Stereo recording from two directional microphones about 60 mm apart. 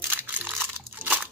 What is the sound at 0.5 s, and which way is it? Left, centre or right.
Crumpling, right.